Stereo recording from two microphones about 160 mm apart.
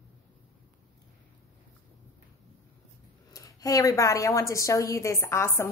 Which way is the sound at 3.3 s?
20° left (ahead or behind).